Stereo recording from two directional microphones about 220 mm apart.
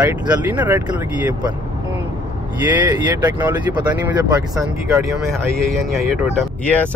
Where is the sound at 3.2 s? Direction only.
15° right (ahead or behind).